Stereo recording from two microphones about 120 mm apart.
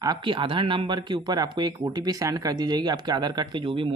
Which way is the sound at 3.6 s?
50° right (ahead or behind).